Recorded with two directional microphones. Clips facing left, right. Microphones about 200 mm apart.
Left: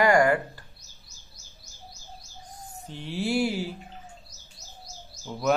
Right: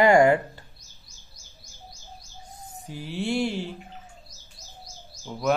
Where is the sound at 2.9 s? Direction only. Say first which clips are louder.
Even; centre (ahead or behind).